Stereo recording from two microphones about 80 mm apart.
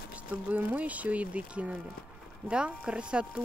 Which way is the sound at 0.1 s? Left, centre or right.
Right.